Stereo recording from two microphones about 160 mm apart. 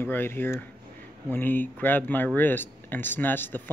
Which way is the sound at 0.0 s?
15° left (ahead or behind).